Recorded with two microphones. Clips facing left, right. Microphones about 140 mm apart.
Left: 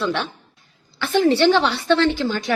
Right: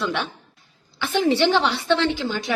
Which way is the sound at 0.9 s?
15° right (ahead or behind).